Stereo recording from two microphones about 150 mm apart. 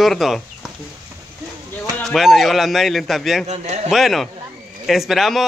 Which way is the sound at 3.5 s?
45° right (ahead or behind).